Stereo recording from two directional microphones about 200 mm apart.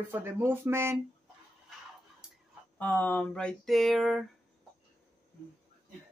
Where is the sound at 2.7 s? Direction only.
10° left (ahead or behind).